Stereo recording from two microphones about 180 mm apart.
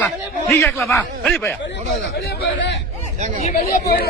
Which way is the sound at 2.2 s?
75° left (ahead or behind).